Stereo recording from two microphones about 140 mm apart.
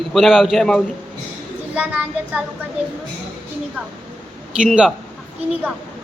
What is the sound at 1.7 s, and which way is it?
Speech, 10° right (ahead or behind).